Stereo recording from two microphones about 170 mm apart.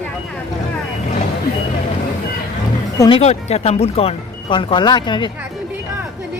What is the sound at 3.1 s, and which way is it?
Speech, 40° left (ahead or behind).